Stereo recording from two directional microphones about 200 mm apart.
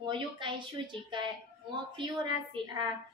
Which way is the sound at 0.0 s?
25° right (ahead or behind).